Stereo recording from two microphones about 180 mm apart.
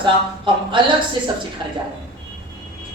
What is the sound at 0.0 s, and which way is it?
Speech, 25° right (ahead or behind).